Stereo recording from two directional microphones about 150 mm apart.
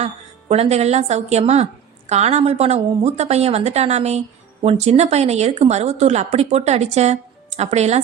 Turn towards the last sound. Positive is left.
turn(degrees=-45)  # may be behind; listen again after turning